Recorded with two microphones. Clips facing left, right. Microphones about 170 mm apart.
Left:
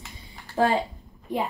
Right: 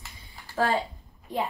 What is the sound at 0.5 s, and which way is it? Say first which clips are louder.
Speech: left 3 dB; 20° left (ahead or behind).